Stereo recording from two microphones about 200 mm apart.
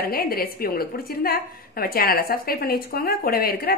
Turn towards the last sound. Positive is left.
turn(degrees=50)  # may be behind; listen again after turning